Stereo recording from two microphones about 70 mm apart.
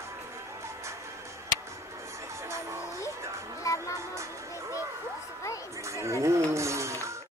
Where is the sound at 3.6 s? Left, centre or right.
Left.